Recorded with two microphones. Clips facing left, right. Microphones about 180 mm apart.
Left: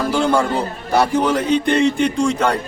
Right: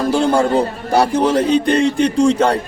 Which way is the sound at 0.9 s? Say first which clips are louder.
Right 2 dB; 35° right (ahead or behind).